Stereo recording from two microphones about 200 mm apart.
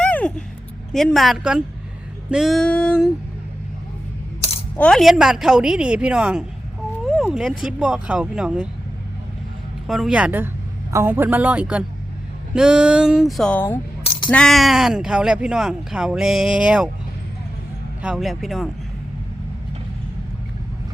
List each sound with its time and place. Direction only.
0.0 s a sound: 5° left (ahead or behind)
0.9 s speech: centre (ahead or behind)
4.4 s coin: 30° left (ahead or behind)
4.8 s speech: centre (ahead or behind)
9.8 s speech: centre (ahead or behind)
18.0 s speech: centre (ahead or behind)